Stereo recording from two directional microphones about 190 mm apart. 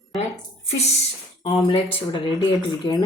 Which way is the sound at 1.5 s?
30° left (ahead or behind).